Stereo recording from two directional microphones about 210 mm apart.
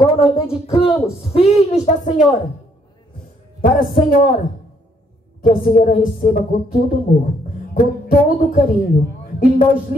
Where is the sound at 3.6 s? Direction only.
45° left (ahead or behind).